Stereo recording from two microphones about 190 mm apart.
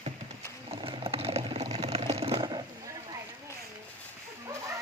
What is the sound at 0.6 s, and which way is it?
Sewing machine, 30° right (ahead or behind).